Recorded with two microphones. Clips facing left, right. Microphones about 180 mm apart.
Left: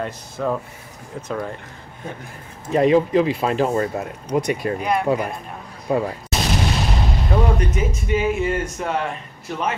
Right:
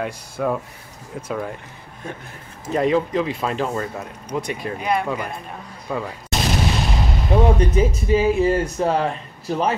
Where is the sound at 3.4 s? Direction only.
35° left (ahead or behind).